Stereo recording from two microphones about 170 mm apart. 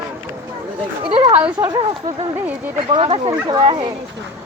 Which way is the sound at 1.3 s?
10° right (ahead or behind).